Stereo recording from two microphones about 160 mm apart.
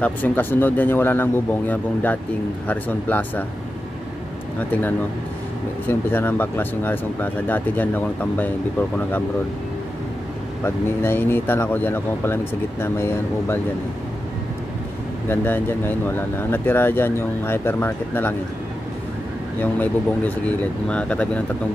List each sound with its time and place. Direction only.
0.0 s speech: 10° left (ahead or behind)
4.6 s speech: 10° left (ahead or behind)
10.6 s speech: 15° left (ahead or behind)
15.2 s speech: 15° left (ahead or behind)
19.6 s speech: 10° left (ahead or behind)